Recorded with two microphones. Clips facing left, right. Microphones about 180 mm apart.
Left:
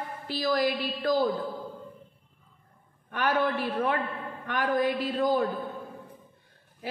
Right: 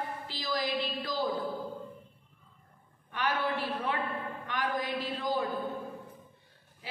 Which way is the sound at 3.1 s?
50° left (ahead or behind).